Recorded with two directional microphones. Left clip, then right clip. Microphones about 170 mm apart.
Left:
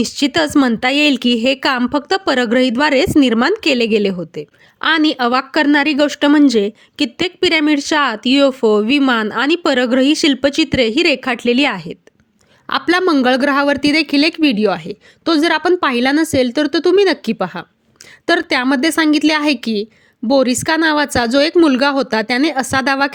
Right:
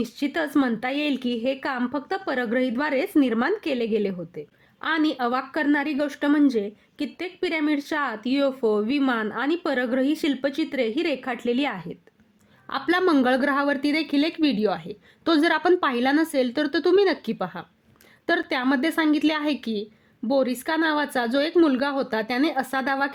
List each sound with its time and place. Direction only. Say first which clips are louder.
0.0 s speech: left 11 dB; 40° left (ahead or behind)